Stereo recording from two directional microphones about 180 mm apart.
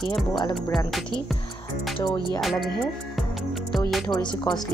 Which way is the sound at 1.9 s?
25° left (ahead or behind).